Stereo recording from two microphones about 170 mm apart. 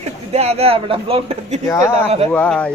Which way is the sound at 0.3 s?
40° right (ahead or behind).